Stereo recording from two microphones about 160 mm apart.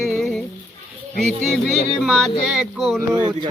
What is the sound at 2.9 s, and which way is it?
Speech, 25° right (ahead or behind).